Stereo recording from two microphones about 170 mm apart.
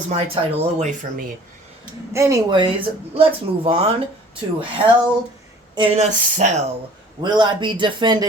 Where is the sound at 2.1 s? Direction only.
15° right (ahead or behind); by 3.9 s 35° right (ahead or behind).